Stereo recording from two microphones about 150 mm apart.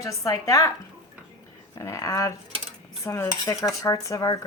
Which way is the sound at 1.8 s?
20° left (ahead or behind).